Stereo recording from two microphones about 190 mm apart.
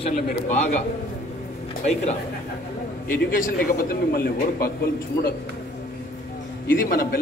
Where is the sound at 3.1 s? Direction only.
45° left (ahead or behind).